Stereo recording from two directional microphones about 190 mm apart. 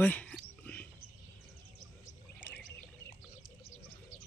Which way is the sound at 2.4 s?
10° left (ahead or behind).